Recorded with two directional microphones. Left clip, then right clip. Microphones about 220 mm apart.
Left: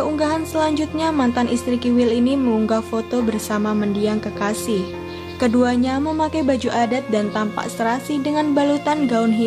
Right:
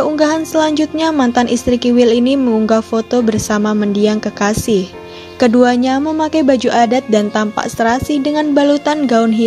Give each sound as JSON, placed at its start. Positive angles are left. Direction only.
{"t": 0.0, "sound": "speech", "side_deg": -25}